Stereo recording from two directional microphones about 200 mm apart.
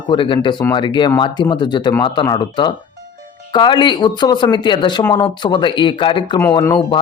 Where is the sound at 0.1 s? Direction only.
25° left (ahead or behind).